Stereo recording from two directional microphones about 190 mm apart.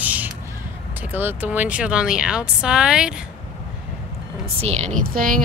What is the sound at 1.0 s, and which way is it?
Speech, 10° right (ahead or behind).